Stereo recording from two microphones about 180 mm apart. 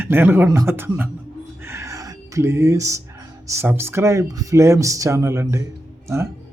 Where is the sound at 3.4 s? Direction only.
15° right (ahead or behind).